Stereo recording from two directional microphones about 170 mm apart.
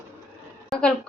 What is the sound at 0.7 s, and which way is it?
Speech, 5° left (ahead or behind).